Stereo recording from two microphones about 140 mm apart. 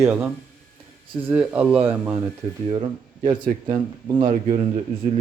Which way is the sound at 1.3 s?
10° right (ahead or behind).